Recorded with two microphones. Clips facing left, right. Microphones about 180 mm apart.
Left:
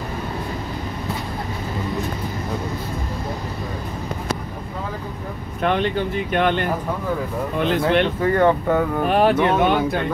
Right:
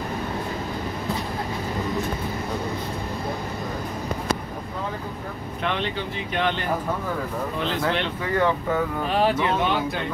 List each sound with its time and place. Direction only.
5.6 s speech: 50° left (ahead or behind)